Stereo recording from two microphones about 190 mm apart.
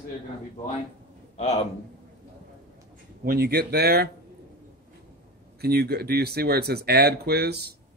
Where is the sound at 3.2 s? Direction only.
55° right (ahead or behind).